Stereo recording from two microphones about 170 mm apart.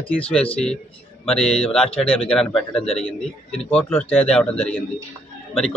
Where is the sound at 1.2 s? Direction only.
5° left (ahead or behind).